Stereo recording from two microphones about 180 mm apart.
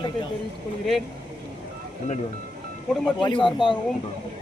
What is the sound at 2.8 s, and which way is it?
Speech, 5° left (ahead or behind).